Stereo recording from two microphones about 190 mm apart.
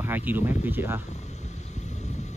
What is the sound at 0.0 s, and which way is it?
Speech, 10° right (ahead or behind).